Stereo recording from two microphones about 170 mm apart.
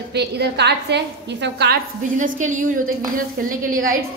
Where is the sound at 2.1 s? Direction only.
45° right (ahead or behind).